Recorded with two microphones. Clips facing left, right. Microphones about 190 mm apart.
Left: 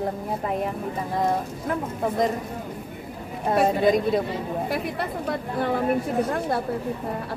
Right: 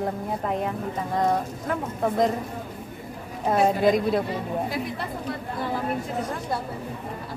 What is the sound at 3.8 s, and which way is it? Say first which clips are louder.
Speech: left 1 dB; centre (ahead or behind).